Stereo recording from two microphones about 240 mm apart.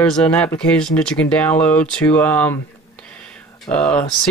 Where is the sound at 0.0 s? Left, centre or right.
Centre.